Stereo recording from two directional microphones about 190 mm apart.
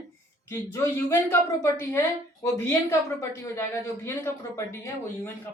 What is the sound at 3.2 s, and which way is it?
A woman's voice, 15° left (ahead or behind).